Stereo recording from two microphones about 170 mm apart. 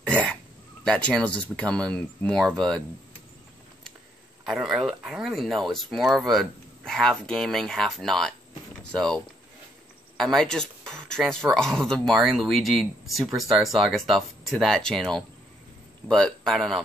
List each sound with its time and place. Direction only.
0.8 s speech: 5° left (ahead or behind)
4.5 s speech: centre (ahead or behind)